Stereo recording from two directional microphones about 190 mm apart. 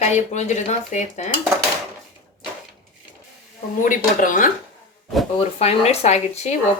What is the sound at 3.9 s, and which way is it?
Speech, 45° left (ahead or behind).